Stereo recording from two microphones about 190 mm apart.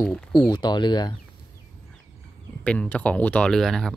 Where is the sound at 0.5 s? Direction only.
25° left (ahead or behind).